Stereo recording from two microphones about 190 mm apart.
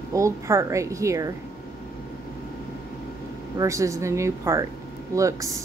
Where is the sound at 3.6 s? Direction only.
15° right (ahead or behind).